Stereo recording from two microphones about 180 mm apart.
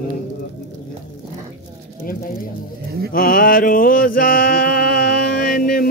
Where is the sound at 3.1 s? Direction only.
55° left (ahead or behind).